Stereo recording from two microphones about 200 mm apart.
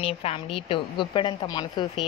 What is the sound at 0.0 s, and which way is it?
A woman's voice, 30° left (ahead or behind).